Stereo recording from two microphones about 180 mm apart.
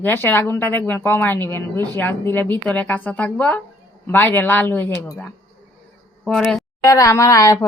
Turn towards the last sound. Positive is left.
turn(degrees=20)  # may be behind; listen again after turning